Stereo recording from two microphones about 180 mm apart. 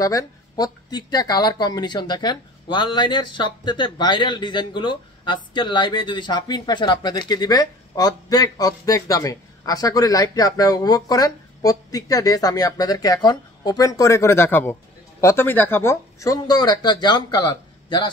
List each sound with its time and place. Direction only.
0.0 s speech: 20° left (ahead or behind)